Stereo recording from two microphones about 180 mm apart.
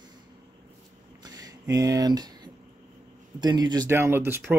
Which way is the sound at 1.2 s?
20° right (ahead or behind).